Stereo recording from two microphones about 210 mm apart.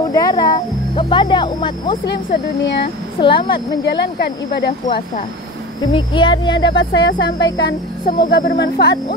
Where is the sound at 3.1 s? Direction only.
20° left (ahead or behind).